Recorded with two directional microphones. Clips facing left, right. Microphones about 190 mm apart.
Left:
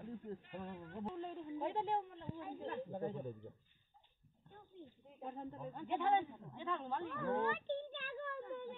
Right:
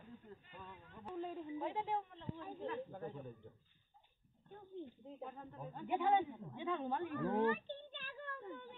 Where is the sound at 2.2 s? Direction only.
15° left (ahead or behind).